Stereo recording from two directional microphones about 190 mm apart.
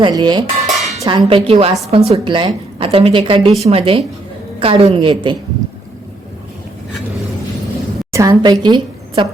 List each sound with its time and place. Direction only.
0.0 s a woman's voice: 25° right (ahead or behind)
0.7 s dishes: centre (ahead or behind)
1.0 s a woman's voice: 25° right (ahead or behind)
8.1 s a woman's voice: 15° right (ahead or behind)